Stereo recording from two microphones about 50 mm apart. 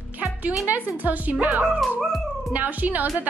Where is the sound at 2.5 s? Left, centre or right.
Right.